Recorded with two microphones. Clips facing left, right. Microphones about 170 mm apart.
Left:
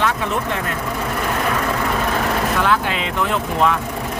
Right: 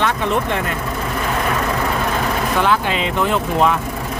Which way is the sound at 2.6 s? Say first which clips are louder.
Right 2 dB; centre (ahead or behind).